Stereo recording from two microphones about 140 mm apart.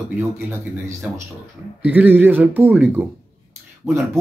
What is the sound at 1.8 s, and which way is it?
Speech, 15° right (ahead or behind).